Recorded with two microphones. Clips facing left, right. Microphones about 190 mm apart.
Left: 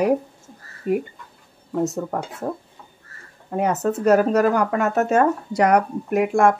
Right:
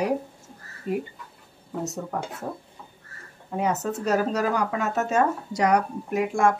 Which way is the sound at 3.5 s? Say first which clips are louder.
Left 5 dB; 55° left (ahead or behind).